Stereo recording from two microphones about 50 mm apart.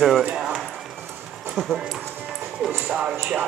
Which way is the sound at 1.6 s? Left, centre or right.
Centre.